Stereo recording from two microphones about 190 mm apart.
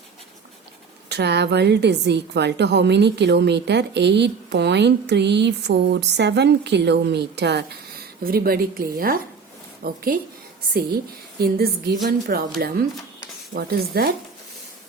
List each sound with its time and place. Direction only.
1.1 s a woman's voice: 60° right (ahead or behind)
8.2 s a woman's voice: 50° right (ahead or behind)
11.3 s a woman's voice: 55° right (ahead or behind)